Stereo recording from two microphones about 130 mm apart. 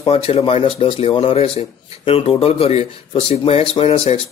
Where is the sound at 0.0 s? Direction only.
45° left (ahead or behind).